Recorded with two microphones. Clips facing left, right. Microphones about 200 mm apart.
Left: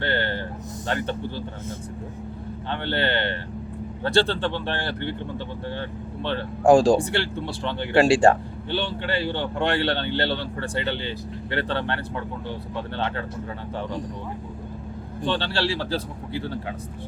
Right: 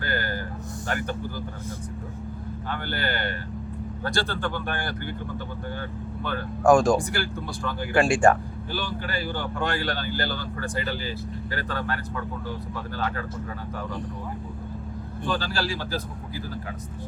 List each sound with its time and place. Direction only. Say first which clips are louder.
0.0 s a sound: left 4 dB; 30° left (ahead or behind)
0.9 s speech: left 3 dB; 25° left (ahead or behind)
2.6 s speech: left 5 dB; 25° left (ahead or behind)
6.2 s speech: left 2 dB; 30° left (ahead or behind)
15.2 s speech: left 3 dB; 30° left (ahead or behind)